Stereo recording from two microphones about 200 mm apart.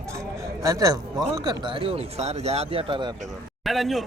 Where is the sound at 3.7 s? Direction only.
Centre (ahead or behind).